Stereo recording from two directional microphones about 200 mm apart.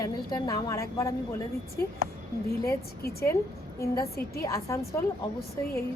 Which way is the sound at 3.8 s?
15° left (ahead or behind).